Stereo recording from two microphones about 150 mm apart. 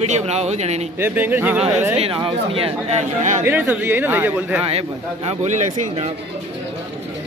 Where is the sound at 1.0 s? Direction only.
15° right (ahead or behind).